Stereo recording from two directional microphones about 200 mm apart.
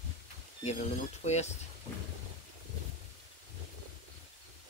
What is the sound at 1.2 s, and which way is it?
Speech, 35° left (ahead or behind).